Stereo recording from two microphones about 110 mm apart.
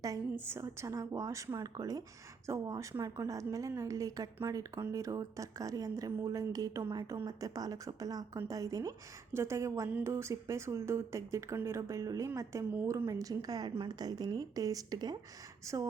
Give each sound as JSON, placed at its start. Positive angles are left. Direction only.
{"t": 0.0, "sound": "a woman's voice", "side_deg": -25}